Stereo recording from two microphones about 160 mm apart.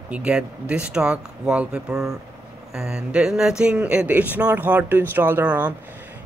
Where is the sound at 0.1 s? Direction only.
5° right (ahead or behind).